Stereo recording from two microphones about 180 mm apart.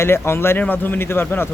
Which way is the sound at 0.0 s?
15° left (ahead or behind).